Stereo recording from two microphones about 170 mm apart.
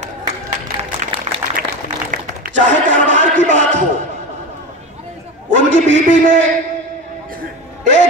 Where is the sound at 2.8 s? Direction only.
50° right (ahead or behind).